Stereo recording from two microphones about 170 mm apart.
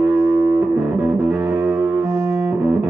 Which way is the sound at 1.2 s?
10° right (ahead or behind).